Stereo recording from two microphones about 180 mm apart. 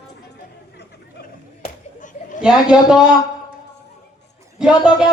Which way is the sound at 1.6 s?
45° left (ahead or behind).